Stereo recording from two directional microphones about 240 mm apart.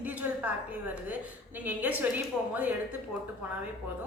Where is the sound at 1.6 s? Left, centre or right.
Centre.